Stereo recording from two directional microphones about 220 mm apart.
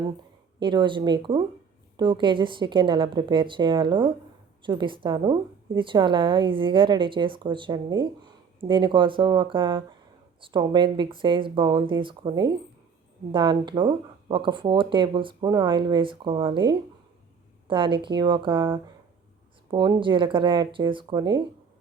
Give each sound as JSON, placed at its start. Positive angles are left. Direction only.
{"t": 0.6, "sound": "a woman's voice", "side_deg": -20}